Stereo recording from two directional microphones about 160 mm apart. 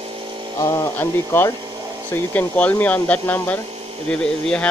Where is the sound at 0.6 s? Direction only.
15° left (ahead or behind).